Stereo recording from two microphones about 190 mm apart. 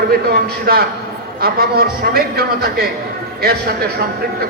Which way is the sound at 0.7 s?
55° right (ahead or behind).